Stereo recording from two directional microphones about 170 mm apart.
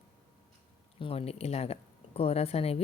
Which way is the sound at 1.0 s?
35° left (ahead or behind).